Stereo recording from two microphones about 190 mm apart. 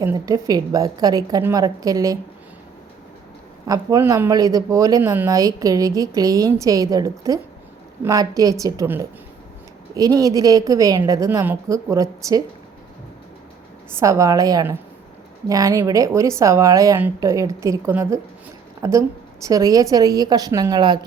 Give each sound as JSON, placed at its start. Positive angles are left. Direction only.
{"t": 0.0, "sound": "speech", "side_deg": -15}
{"t": 3.7, "sound": "speech", "side_deg": -15}
{"t": 13.9, "sound": "speech", "side_deg": -15}